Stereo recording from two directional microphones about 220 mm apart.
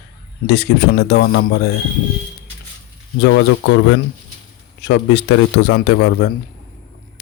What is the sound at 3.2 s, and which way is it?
A man's voice, 60° left (ahead or behind).